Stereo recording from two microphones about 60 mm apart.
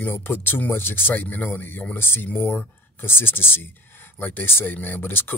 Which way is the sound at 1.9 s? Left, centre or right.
Left.